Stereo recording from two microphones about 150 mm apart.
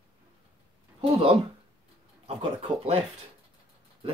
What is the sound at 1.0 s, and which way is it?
Speech, 40° right (ahead or behind).